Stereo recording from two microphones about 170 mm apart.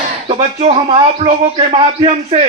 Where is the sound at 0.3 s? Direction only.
40° right (ahead or behind).